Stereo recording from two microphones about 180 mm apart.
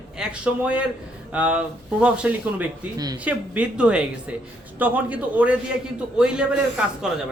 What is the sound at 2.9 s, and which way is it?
Speech, 20° right (ahead or behind).